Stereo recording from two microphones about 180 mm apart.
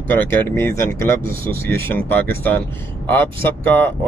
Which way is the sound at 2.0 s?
10° left (ahead or behind).